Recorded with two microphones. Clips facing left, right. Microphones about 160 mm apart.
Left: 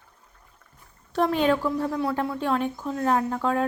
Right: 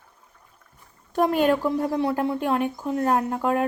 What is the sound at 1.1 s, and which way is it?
Speech, 10° right (ahead or behind).